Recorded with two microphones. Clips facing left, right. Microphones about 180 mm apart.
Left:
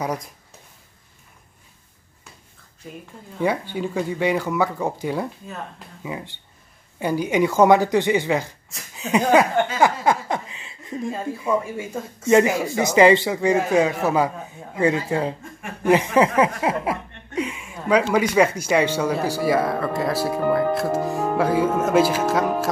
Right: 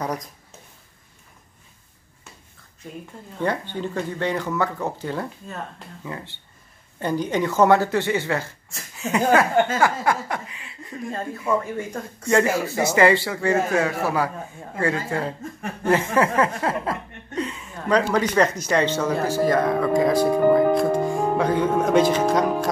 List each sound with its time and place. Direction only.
0.0 s speech: 10° left (ahead or behind)
2.8 s speech: centre (ahead or behind); by 11.1 s 25° left (ahead or behind)
11.1 s speech: 10° left (ahead or behind)
12.8 s speech: 20° left (ahead or behind)